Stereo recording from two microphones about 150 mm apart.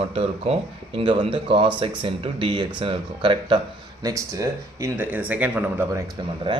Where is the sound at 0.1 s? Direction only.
40° right (ahead or behind).